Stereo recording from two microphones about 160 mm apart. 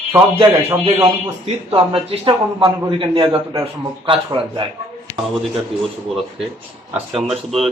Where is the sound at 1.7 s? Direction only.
35° right (ahead or behind).